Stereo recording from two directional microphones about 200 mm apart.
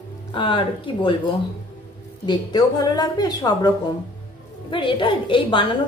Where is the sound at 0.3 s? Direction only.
25° left (ahead or behind).